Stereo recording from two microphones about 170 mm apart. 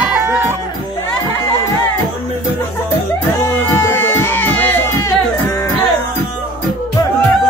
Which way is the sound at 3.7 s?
10° left (ahead or behind).